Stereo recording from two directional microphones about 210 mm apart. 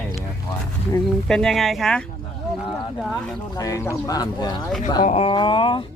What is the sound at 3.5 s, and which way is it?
Speech, 15° left (ahead or behind).